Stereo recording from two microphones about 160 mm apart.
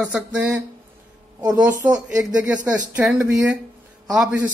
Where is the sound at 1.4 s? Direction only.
25° right (ahead or behind).